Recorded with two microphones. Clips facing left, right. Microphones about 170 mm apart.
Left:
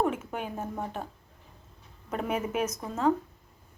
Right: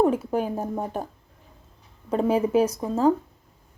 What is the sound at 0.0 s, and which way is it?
Speech, 35° right (ahead or behind).